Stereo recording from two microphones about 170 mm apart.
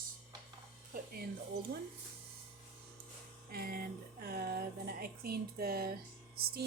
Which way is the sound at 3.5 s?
60° right (ahead or behind).